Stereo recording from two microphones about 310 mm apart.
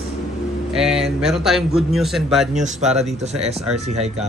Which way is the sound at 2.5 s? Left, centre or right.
Right.